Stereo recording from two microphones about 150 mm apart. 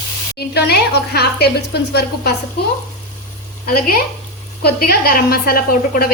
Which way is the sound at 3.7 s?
85° left.